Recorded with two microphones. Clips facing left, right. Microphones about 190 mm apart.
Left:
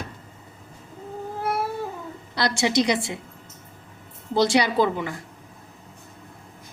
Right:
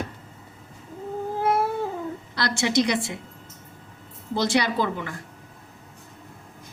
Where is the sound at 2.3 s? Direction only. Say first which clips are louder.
Left 1 dB; 15° left (ahead or behind).